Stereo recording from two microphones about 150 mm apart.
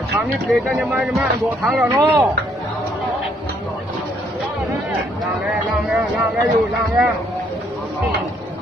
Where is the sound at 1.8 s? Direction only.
20° right (ahead or behind).